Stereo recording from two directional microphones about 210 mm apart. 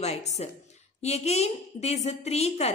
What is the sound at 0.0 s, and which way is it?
A woman's voice, 30° left (ahead or behind).